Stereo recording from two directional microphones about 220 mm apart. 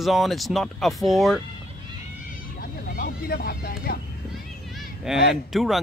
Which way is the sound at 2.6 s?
40° left (ahead or behind).